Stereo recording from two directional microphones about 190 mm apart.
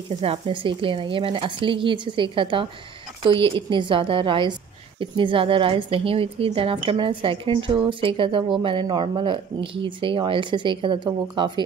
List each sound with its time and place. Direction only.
0.2 s a woman's voice: 30° right (ahead or behind)